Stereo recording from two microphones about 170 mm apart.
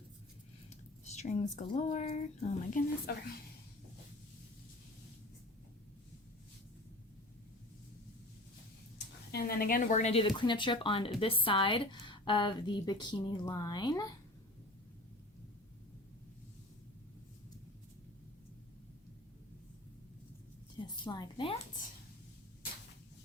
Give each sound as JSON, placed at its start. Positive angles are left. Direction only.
{"t": 1.0, "sound": "speech", "side_deg": 40}
{"t": 9.3, "sound": "a woman's voice", "side_deg": 60}
{"t": 20.7, "sound": "a sound", "side_deg": 25}